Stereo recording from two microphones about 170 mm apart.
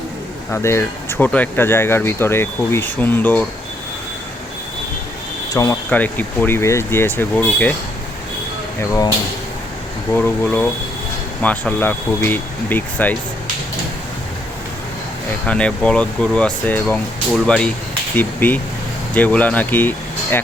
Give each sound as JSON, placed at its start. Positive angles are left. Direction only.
{"t": 0.5, "sound": "speech", "side_deg": 15}
{"t": 5.5, "sound": "speech", "side_deg": 15}
{"t": 8.8, "sound": "speech", "side_deg": 15}
{"t": 10.1, "sound": "speech", "side_deg": 10}
{"t": 15.4, "sound": "speech", "side_deg": 5}